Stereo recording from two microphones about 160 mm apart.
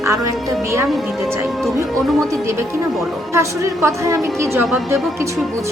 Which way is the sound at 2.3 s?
15° right (ahead or behind).